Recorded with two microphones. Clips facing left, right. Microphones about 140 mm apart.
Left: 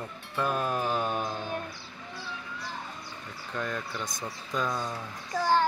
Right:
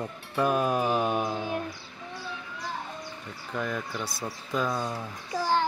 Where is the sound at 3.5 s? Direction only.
5° right (ahead or behind).